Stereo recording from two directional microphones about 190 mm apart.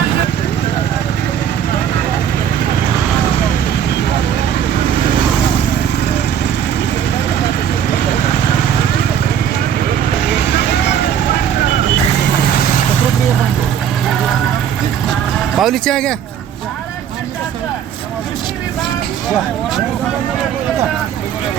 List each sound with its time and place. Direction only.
15.5 s speech: centre (ahead or behind)